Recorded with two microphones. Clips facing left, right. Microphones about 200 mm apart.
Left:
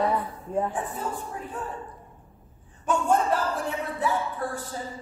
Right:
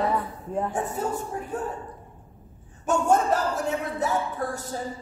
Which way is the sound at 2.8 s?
45° right (ahead or behind).